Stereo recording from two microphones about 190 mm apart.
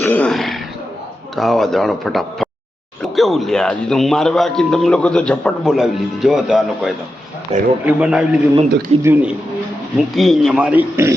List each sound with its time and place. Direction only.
0.0 s throat clearing: 5° left (ahead or behind)
1.4 s speech: centre (ahead or behind)
7.5 s a man's voice: 35° right (ahead or behind)
7.9 s speech: 5° right (ahead or behind)
10.2 s speech: centre (ahead or behind)